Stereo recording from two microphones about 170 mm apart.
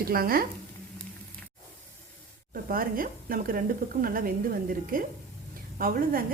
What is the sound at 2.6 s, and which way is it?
A woman's voice, 55° right (ahead or behind).